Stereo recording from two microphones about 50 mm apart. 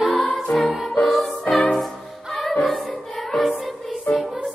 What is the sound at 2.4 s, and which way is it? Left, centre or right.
Choir, left.